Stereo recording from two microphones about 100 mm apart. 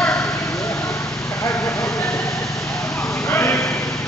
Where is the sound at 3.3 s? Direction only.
25° left (ahead or behind).